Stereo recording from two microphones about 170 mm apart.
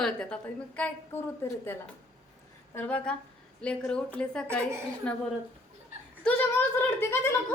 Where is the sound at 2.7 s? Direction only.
10° left (ahead or behind).